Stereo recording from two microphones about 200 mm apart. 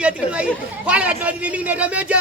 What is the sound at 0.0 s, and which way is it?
Speech, 5° right (ahead or behind).